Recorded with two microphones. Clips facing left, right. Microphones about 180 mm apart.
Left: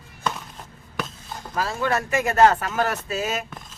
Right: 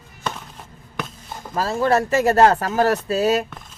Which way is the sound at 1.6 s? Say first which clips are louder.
Right 5 dB; 35° right (ahead or behind).